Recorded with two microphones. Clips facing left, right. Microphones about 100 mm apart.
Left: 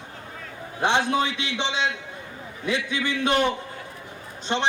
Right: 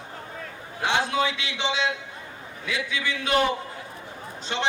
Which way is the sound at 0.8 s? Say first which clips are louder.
Left 2 dB; 20° left (ahead or behind).